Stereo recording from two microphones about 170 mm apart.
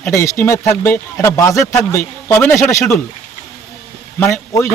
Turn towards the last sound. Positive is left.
turn(degrees=20)  # may be behind; listen again after turning